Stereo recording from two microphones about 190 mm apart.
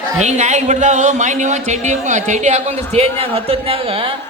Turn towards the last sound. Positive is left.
turn(degrees=-30)  # may be behind; listen again after turning